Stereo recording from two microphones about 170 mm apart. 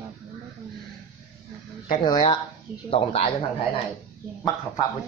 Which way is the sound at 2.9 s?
35° left (ahead or behind).